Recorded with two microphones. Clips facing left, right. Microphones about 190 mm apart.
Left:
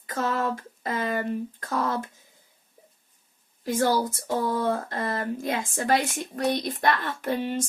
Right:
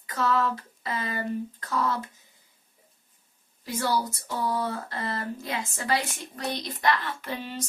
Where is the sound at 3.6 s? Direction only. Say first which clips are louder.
Left 4 dB; 45° left (ahead or behind).